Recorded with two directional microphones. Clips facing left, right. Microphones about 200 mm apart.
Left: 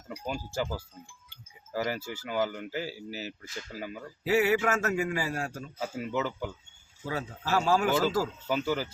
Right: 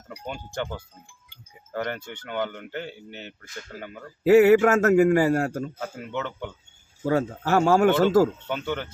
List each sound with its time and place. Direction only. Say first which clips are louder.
0.3 s speech: right 1 dB; 5° left (ahead or behind)
4.2 s a man's voice: right 10 dB; 50° right (ahead or behind)
5.8 s speech: even; 5° left (ahead or behind)
7.0 s a man's voice: right 11 dB; 50° right (ahead or behind)
8.4 s speech: even; 5° left (ahead or behind)